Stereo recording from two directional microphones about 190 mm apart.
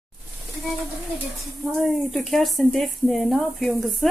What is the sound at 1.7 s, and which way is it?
Speech, centre (ahead or behind).